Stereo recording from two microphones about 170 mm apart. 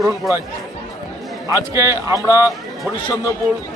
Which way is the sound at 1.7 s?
15° right (ahead or behind).